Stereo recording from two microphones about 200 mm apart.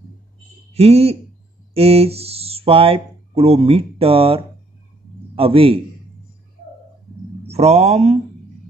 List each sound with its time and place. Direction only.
0.7 s a man's voice: 30° right (ahead or behind)
7.4 s speech: 30° right (ahead or behind)